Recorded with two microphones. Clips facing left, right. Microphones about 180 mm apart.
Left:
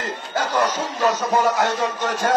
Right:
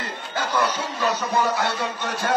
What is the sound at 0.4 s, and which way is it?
Speech, 45° left (ahead or behind).